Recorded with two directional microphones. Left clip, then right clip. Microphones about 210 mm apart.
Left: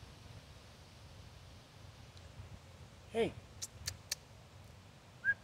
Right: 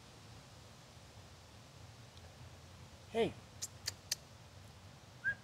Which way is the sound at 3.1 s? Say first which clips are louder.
Even; centre (ahead or behind).